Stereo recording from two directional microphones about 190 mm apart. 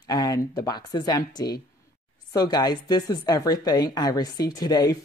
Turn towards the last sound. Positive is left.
turn(degrees=20)  # may be behind; listen again after turning